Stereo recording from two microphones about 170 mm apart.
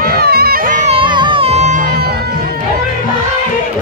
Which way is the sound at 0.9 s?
30° right (ahead or behind).